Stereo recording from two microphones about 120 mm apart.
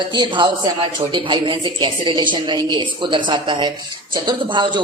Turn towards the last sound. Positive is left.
turn(degrees=-40)  # may be behind; listen again after turning